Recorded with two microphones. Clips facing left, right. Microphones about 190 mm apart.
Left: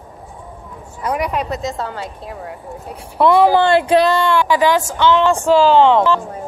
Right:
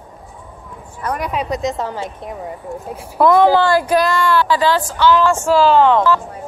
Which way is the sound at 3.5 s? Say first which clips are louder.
Left 2 dB; 25° left (ahead or behind).